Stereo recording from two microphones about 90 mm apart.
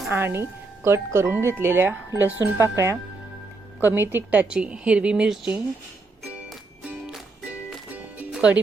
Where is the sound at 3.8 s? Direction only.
25° right (ahead or behind); by 5.6 s 10° right (ahead or behind).